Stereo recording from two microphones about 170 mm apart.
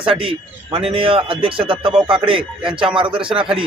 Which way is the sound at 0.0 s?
30° right (ahead or behind).